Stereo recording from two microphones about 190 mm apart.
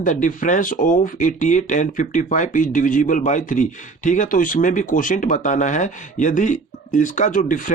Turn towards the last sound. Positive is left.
turn(degrees=45)  # may be behind; listen again after turning